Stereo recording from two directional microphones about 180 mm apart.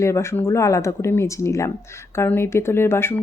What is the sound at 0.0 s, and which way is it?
Speech, 15° left (ahead or behind).